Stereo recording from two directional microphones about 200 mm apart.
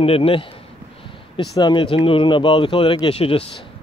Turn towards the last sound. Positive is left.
turn(degrees=30)  # may be behind; listen again after turning